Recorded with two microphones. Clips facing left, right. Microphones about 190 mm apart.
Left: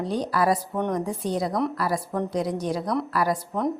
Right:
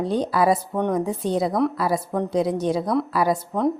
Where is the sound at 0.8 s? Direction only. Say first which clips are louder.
Right 3 dB; 5° right (ahead or behind).